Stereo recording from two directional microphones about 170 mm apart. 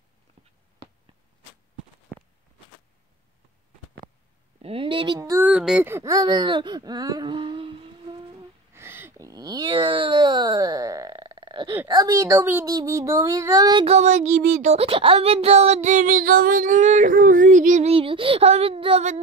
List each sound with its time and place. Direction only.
4.6 s a child's voice: 35° right (ahead or behind)
5.4 s speech: 5° right (ahead or behind); by 7.8 s 30° right (ahead or behind)
8.4 s a sound: 15° right (ahead or behind)
11.9 s speech: 20° right (ahead or behind)
13.8 s child singing: 40° right (ahead or behind)